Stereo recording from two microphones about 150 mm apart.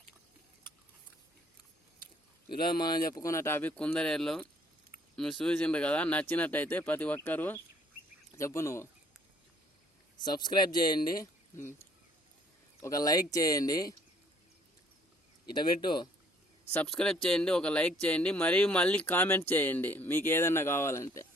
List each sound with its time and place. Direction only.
2.5 s speech: 90° left
3.2 s speech: 20° left (ahead or behind)
10.2 s speech: 30° left (ahead or behind)
12.8 s speech: 25° left (ahead or behind)
15.4 s speech: 30° left (ahead or behind)
16.7 s speech: 5° left (ahead or behind); by 21.2 s 20° left (ahead or behind)